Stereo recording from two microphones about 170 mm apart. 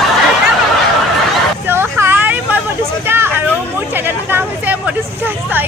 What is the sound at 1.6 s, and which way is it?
Vehicle, 10° right (ahead or behind).